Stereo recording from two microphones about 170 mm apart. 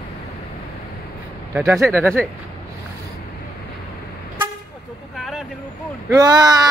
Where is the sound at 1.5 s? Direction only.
15° right (ahead or behind).